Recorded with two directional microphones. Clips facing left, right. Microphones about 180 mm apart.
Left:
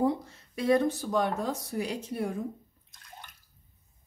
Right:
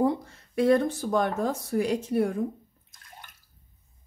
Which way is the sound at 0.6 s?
55° right (ahead or behind).